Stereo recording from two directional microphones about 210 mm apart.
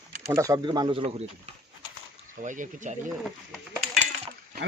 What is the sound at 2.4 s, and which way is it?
Speech, 35° right (ahead or behind).